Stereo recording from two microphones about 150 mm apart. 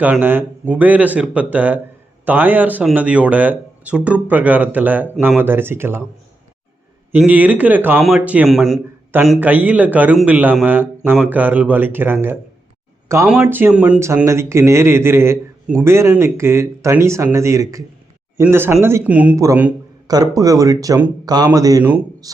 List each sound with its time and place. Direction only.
0.0 s speech: 10° right (ahead or behind)
7.1 s speech: 10° right (ahead or behind)
13.4 s speech: 15° right (ahead or behind)
20.1 s speech: 25° right (ahead or behind)